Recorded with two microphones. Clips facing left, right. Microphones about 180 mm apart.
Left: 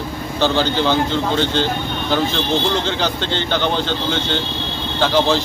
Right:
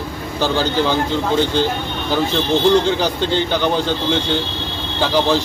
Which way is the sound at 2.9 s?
10° right (ahead or behind).